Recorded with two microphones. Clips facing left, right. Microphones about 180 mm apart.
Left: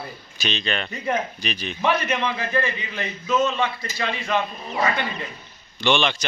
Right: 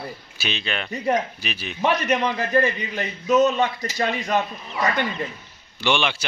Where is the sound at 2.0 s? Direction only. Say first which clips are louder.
Right 3 dB; 40° right (ahead or behind).